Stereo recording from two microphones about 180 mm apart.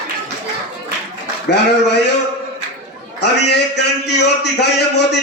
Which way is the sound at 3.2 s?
70° left (ahead or behind).